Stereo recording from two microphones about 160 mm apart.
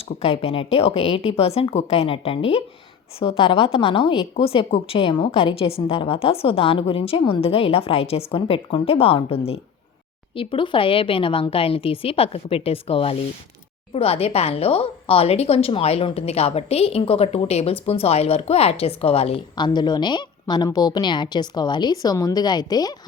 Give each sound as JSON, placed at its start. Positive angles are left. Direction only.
{"t": 0.2, "sound": "a woman's voice", "side_deg": 40}